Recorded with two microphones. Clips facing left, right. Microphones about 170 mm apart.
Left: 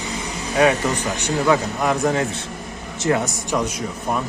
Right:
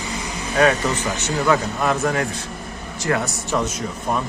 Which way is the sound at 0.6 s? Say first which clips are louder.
Even; 15° left (ahead or behind).